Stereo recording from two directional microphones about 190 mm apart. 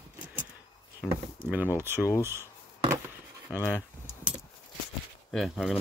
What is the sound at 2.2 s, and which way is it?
Wood, 15° right (ahead or behind).